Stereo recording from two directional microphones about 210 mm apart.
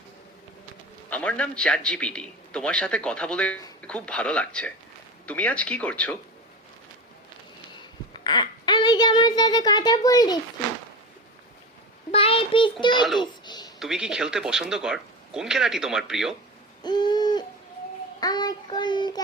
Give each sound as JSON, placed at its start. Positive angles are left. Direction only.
{"t": 1.1, "sound": "speech", "side_deg": 5}
{"t": 7.8, "sound": "a child's voice", "side_deg": 20}
{"t": 12.1, "sound": "a sound", "side_deg": 25}
{"t": 12.9, "sound": "speech", "side_deg": 0}
{"t": 13.4, "sound": "a sound", "side_deg": 20}
{"t": 13.7, "sound": "speech", "side_deg": 0}
{"t": 16.8, "sound": "owl", "side_deg": 20}
{"t": 18.2, "sound": "child singing", "side_deg": 20}